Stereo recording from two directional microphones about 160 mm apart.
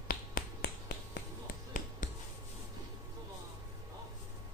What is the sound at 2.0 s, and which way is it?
Writing, 50° left (ahead or behind).